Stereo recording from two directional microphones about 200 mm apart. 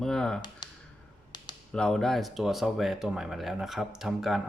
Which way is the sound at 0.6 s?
20° left (ahead or behind).